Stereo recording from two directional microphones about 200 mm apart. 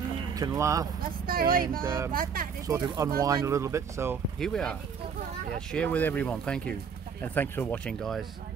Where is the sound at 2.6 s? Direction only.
20° right (ahead or behind).